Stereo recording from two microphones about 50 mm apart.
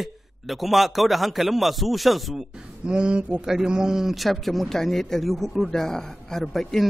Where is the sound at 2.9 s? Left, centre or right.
Centre.